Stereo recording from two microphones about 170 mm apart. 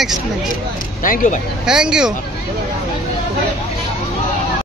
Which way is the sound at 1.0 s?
50° left (ahead or behind).